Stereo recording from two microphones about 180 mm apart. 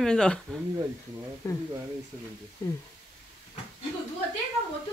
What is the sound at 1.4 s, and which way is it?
Speech, 15° left (ahead or behind).